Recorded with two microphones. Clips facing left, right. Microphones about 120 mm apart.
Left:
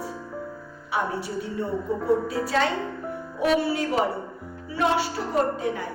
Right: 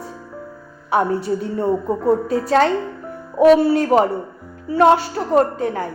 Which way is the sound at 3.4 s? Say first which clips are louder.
Right 11 dB; 45° right (ahead or behind).